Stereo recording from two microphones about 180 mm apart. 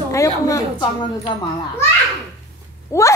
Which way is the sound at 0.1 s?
20° left (ahead or behind).